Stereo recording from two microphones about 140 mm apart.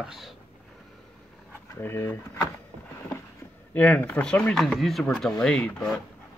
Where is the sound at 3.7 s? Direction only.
10° left (ahead or behind).